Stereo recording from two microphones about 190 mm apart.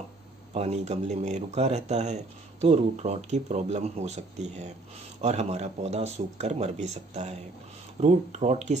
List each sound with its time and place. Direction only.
0.6 s speech: 35° right (ahead or behind)